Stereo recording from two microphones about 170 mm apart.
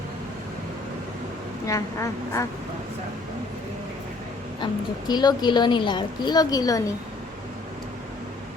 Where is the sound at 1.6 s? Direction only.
20° left (ahead or behind).